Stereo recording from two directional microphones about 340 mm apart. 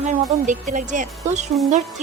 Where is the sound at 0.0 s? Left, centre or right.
Right.